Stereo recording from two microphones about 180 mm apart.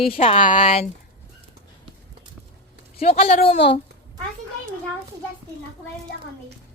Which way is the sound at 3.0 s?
35° left (ahead or behind).